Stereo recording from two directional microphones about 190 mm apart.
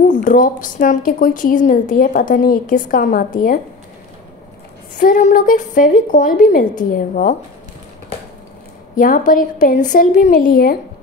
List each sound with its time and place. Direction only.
0.1 s a woman's voice: 45° left (ahead or behind)
4.9 s a woman's voice: 40° left (ahead or behind)
8.9 s a woman's voice: 45° left (ahead or behind)